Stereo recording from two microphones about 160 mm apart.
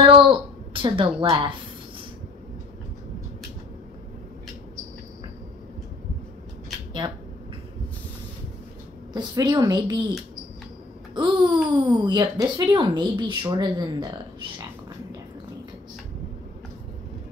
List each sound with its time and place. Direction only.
0.0 s a sound: 30° right (ahead or behind)
7.0 s speech: 25° right (ahead or behind)
9.1 s speech: 25° right (ahead or behind)
11.1 s speech: 30° right (ahead or behind)